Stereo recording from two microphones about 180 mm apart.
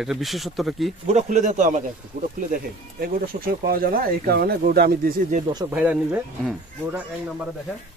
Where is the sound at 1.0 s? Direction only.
40° right (ahead or behind).